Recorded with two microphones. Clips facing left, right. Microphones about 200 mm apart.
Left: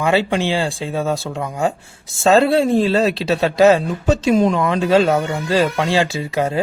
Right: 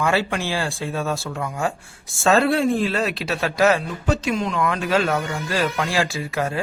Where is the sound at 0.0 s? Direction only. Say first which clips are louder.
Left 5 dB; 20° left (ahead or behind).